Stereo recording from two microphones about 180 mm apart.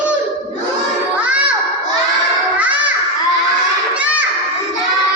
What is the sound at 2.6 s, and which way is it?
Children playing, 10° right (ahead or behind).